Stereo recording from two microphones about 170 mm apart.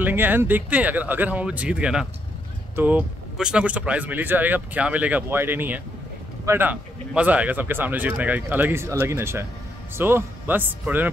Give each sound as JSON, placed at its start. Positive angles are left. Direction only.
{"t": 0.0, "sound": "speech", "side_deg": -10}